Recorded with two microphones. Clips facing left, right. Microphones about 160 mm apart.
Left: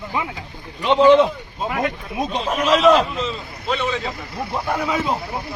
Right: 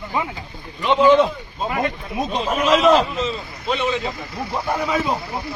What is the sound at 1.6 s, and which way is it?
A man's voice, centre (ahead or behind).